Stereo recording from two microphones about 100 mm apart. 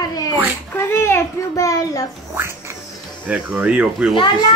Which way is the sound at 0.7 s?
25° left (ahead or behind).